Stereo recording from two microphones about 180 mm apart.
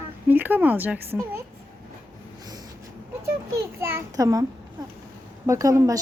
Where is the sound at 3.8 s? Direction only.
15° right (ahead or behind).